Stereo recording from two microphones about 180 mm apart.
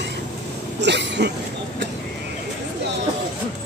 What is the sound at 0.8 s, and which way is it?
Cough, 75° right (ahead or behind).